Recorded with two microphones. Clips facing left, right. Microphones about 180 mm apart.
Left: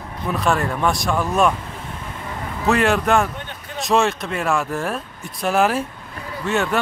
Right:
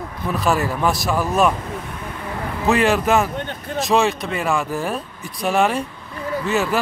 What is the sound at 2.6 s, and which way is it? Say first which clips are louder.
Speech: right 1 dB; centre (ahead or behind).